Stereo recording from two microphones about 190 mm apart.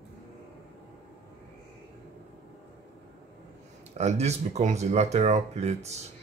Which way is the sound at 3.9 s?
35° right (ahead or behind).